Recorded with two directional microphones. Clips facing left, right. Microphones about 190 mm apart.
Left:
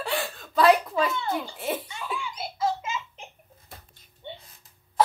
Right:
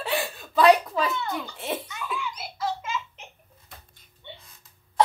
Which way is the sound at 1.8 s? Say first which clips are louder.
Right 1 dB; 30° left (ahead or behind).